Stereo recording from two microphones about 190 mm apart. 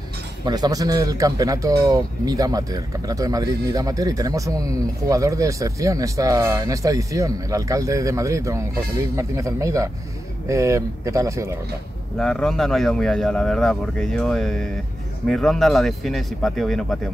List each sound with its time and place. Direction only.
0.5 s speech: 20° right (ahead or behind)
12.2 s speech: 5° left (ahead or behind)